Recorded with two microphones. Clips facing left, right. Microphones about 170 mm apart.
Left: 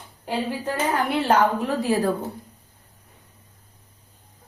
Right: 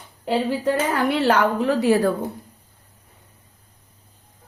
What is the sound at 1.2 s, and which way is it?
Speech, 80° right.